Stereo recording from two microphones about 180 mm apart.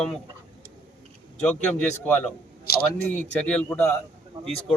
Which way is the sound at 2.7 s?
60° left (ahead or behind).